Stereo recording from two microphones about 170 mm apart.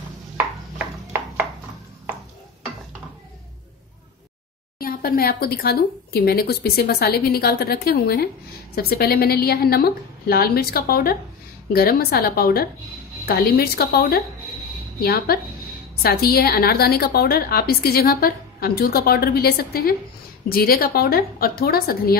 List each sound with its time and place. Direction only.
4.7 s a woman's voice: 60° left (ahead or behind)